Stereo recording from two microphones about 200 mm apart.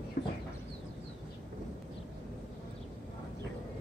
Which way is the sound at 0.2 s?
50° left (ahead or behind).